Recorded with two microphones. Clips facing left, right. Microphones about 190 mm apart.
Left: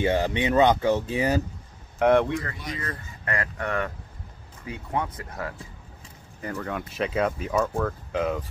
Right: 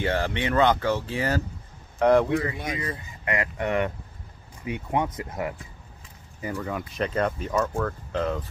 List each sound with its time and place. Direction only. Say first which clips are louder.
0.0 s speech: left 3 dB; 20° left (ahead or behind)
2.0 s speech: even; centre (ahead or behind)
2.5 s speech: right 4 dB; 50° right (ahead or behind)
2.8 s speech: right 2 dB; 15° right (ahead or behind)
6.4 s speech: right 1 dB; 5° right (ahead or behind)
6.9 s speech: left 1 dB; 5° left (ahead or behind)